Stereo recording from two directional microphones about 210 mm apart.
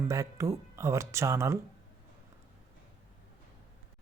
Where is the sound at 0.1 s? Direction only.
15° right (ahead or behind).